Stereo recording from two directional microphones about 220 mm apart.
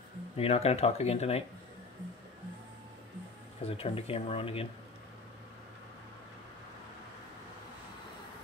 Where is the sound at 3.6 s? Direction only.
25° left (ahead or behind).